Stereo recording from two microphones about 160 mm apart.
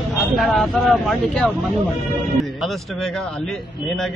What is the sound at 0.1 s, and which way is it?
Speech, centre (ahead or behind).